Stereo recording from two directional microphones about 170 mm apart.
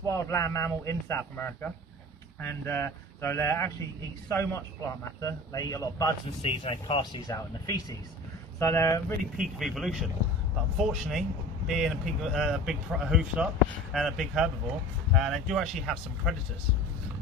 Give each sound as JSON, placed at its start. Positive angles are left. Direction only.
{"t": 0.1, "sound": "a man's voice", "side_deg": 15}
{"t": 6.4, "sound": "a man's voice", "side_deg": 35}
{"t": 9.6, "sound": "speech", "side_deg": 0}